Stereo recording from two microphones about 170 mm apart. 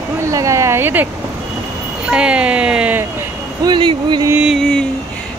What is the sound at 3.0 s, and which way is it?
Vehicle, 15° right (ahead or behind).